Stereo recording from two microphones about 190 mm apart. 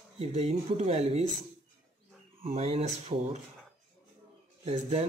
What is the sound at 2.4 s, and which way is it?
Speech, 30° right (ahead or behind).